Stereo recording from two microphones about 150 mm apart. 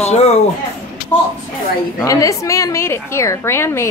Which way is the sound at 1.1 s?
10° left (ahead or behind).